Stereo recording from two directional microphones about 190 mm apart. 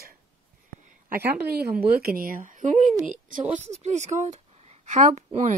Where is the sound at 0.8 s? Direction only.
40° right (ahead or behind).